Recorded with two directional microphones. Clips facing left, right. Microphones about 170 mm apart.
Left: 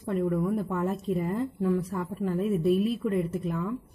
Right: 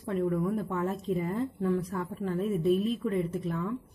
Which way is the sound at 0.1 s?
Centre (ahead or behind).